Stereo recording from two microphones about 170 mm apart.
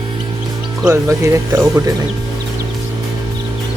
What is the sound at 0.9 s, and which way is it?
Speech, 15° right (ahead or behind).